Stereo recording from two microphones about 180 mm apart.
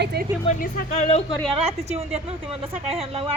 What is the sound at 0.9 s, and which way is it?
Speech, 35° left (ahead or behind).